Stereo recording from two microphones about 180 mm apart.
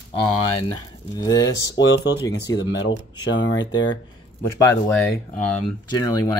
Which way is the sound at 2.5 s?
85° left.